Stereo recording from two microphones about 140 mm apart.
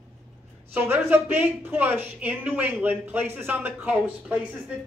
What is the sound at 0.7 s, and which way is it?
A woman's voice, 15° right (ahead or behind).